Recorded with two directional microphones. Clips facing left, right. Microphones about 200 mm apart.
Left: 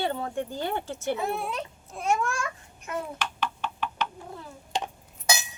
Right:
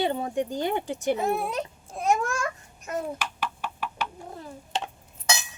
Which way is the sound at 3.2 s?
10° right (ahead or behind).